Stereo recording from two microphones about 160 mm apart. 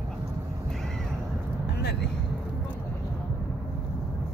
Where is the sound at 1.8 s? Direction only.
90° left.